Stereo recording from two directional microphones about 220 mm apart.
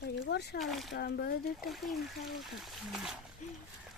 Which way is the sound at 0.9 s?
45° left (ahead or behind).